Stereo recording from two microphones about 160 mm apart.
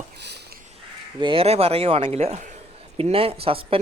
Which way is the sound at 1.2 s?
35° right (ahead or behind).